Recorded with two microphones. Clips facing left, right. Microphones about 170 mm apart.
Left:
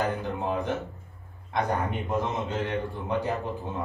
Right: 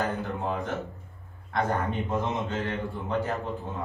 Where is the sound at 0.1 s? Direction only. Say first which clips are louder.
Left 1 dB; 15° left (ahead or behind).